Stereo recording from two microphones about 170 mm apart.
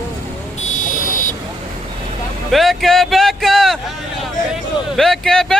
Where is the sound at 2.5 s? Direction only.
Centre (ahead or behind).